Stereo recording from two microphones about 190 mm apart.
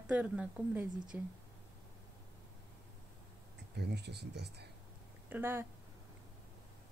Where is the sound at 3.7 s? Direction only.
60° right (ahead or behind).